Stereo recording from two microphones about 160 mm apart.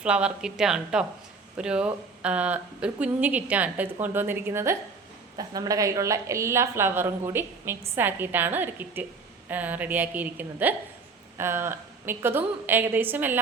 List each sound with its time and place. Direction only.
0.0 s a woman's voice: 5° right (ahead or behind)